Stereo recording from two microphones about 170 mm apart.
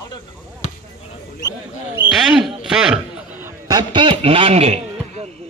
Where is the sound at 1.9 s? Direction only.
5° right (ahead or behind).